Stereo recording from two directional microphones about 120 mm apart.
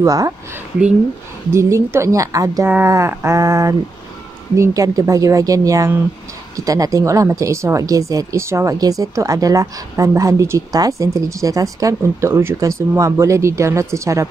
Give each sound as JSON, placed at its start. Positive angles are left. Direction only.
{"t": 0.0, "sound": "a woman's voice", "side_deg": -30}
{"t": 1.5, "sound": "a woman's voice", "side_deg": -25}